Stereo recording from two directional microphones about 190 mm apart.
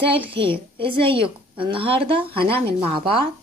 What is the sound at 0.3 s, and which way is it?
A woman's voice, 30° right (ahead or behind).